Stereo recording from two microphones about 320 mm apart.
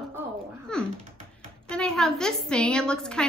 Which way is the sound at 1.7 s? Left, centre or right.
Centre.